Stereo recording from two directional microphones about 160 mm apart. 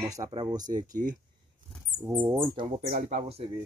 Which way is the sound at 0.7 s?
55° right (ahead or behind).